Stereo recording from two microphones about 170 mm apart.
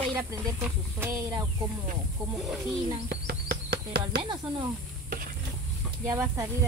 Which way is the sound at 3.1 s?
65° right (ahead or behind).